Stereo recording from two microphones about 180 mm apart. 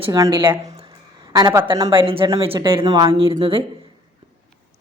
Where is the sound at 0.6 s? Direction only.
40° right (ahead or behind).